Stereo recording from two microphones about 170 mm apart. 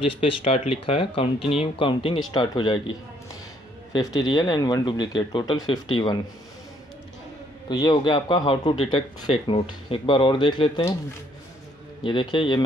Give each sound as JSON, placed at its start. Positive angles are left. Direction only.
{"t": 0.0, "sound": "speech", "side_deg": 30}
{"t": 3.9, "sound": "speech", "side_deg": 25}
{"t": 7.6, "sound": "speech", "side_deg": 25}
{"t": 12.0, "sound": "speech", "side_deg": 30}